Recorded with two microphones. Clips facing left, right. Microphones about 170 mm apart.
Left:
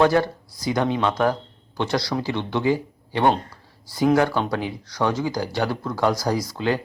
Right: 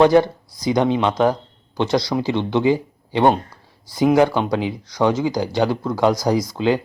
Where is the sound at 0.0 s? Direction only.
20° right (ahead or behind).